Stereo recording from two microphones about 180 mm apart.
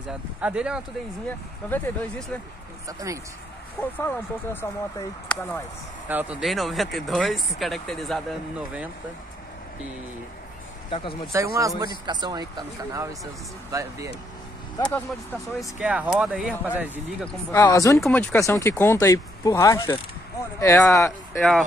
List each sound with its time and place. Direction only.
0.4 s speech: 5° right (ahead or behind)
1.7 s speech: 5° left (ahead or behind)
2.9 s speech: 20° right (ahead or behind)
3.9 s speech: 10° left (ahead or behind)
6.0 s speech: 10° right (ahead or behind)
10.9 s speech: 30° left (ahead or behind)
11.3 s speech: 15° right (ahead or behind)
15.0 s speech: centre (ahead or behind)
17.5 s speech: 15° left (ahead or behind)
21.4 s speech: centre (ahead or behind)